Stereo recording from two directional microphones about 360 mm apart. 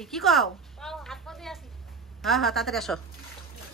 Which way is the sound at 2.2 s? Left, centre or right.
Centre.